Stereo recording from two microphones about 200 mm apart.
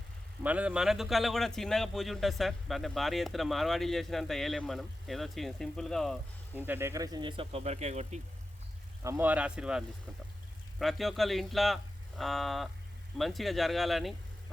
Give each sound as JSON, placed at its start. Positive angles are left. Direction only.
{"t": 0.4, "sound": "speech", "side_deg": -5}
{"t": 6.5, "sound": "speech", "side_deg": -10}
{"t": 9.0, "sound": "speech", "side_deg": -10}